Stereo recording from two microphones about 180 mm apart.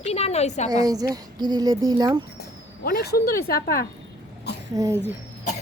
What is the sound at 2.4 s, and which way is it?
Speech, 60° left (ahead or behind).